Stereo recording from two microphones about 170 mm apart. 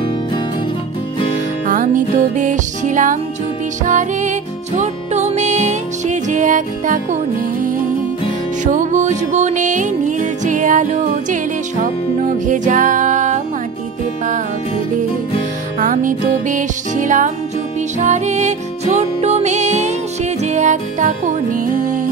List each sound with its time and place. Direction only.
2.3 s music: 45° right (ahead or behind)
8.6 s music: 45° right (ahead or behind)
12.4 s music: 50° right (ahead or behind)
15.8 s music: 50° right (ahead or behind)